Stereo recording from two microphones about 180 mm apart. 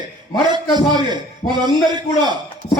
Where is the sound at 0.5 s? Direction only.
25° right (ahead or behind).